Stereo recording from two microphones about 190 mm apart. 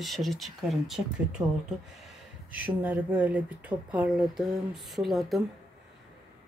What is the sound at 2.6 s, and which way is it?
Speech, 10° right (ahead or behind).